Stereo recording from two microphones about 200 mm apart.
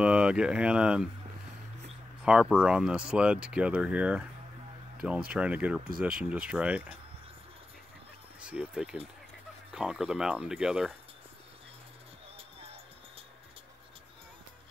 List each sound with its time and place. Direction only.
0.0 s speech: 5° right (ahead or behind)
2.2 s speech: 5° right (ahead or behind)
5.3 s speech: 5° right (ahead or behind)
8.4 s speech: 5° right (ahead or behind)
12.4 s music: 30° right (ahead or behind)